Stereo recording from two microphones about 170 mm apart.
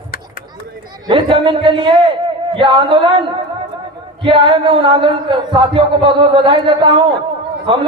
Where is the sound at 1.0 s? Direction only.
30° right (ahead or behind).